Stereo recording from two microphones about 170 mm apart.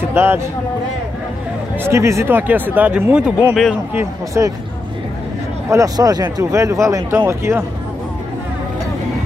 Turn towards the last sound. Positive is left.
turn(degrees=-15)  # may be behind; listen again after turning